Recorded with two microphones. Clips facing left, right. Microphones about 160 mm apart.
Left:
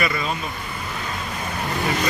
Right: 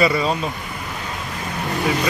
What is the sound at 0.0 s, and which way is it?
Speech, 35° right (ahead or behind).